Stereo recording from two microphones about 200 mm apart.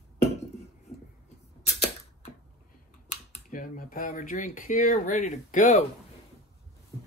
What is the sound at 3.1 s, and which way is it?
Speech, 40° left (ahead or behind).